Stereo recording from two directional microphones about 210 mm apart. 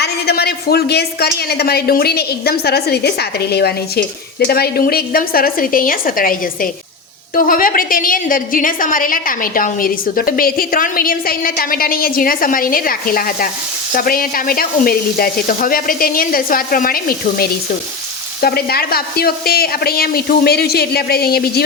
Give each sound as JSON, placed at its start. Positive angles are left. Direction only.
{"t": 0.0, "sound": "a woman's voice", "side_deg": 50}